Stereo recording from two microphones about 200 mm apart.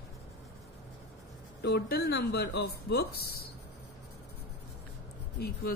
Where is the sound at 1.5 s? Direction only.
55° left (ahead or behind).